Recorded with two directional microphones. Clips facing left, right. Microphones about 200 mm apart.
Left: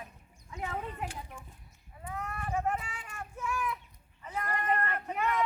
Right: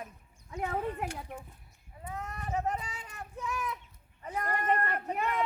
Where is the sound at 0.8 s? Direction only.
60° right (ahead or behind).